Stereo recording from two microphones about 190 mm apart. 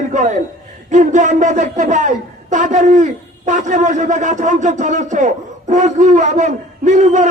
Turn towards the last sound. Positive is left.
turn(degrees=-40)  # may be behind; listen again after turning